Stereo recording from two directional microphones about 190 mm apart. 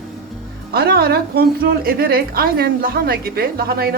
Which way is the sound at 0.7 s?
55° right (ahead or behind).